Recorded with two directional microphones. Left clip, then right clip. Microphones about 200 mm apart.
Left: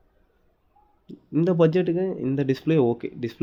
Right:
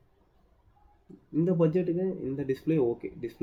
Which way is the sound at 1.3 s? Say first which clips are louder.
Left 6 dB; 50° left (ahead or behind).